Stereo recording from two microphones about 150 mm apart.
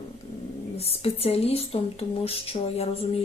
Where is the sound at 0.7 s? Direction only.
40° left (ahead or behind).